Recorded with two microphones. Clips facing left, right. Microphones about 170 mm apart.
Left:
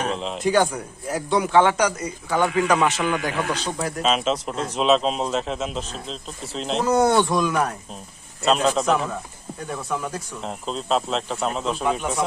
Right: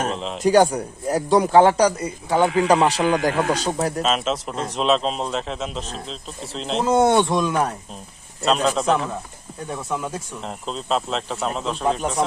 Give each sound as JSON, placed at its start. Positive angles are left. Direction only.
{"t": 0.1, "sound": "a sound", "side_deg": 0}
{"t": 0.3, "sound": "a man's voice", "side_deg": -40}
{"t": 4.0, "sound": "a man's voice", "side_deg": 0}
{"t": 6.8, "sound": "speech", "side_deg": -25}
{"t": 8.4, "sound": "a man's voice", "side_deg": 0}
{"t": 10.1, "sound": "a man's voice", "side_deg": 0}
{"t": 11.8, "sound": "a man's voice", "side_deg": -30}